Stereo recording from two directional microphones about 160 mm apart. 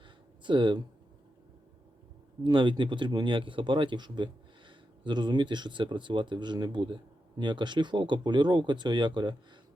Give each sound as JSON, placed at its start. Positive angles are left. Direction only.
{"t": 0.4, "sound": "speech", "side_deg": -30}
{"t": 2.4, "sound": "speech", "side_deg": -30}